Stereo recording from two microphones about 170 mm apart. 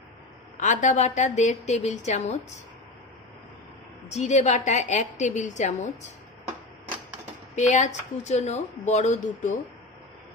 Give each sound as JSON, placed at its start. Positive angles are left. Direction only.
{"t": 0.6, "sound": "speech", "side_deg": 45}
{"t": 4.1, "sound": "speech", "side_deg": 40}
{"t": 7.5, "sound": "speech", "side_deg": 45}